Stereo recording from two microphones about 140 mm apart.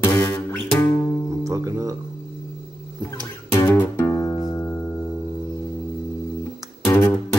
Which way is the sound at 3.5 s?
20° left (ahead or behind).